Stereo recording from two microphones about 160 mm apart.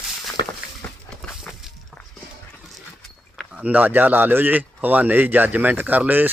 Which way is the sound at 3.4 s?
5° right (ahead or behind).